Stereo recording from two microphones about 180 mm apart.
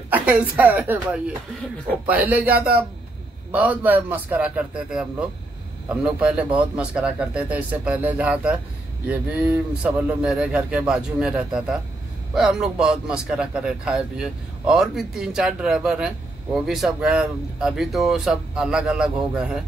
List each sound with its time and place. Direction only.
0.1 s speech: 10° right (ahead or behind)